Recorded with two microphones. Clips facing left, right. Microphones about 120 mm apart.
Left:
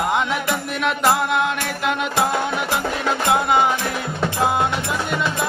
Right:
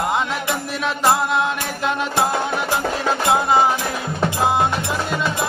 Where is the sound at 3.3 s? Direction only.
30° right (ahead or behind).